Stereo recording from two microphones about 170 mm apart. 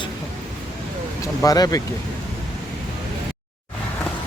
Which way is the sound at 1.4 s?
20° left (ahead or behind).